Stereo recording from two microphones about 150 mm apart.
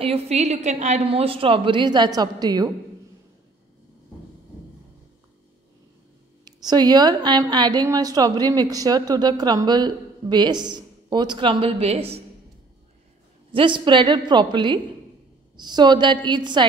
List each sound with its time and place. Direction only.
0.0 s a woman's voice: 40° right (ahead or behind)
6.4 s a woman's voice: 25° right (ahead or behind); by 12.2 s 40° right (ahead or behind)
13.5 s a woman's voice: 35° right (ahead or behind)